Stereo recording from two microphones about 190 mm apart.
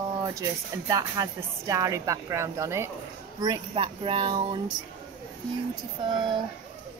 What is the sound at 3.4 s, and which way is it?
Speech, 25° right (ahead or behind).